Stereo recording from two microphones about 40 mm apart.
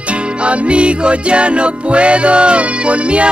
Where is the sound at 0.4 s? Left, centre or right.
Right.